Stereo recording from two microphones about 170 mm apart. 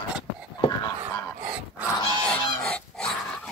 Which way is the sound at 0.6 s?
20° left (ahead or behind).